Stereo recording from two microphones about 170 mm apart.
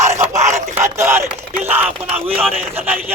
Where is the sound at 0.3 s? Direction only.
45° right (ahead or behind).